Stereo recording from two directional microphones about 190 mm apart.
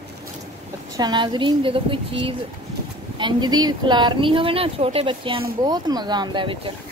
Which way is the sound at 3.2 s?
20° right (ahead or behind).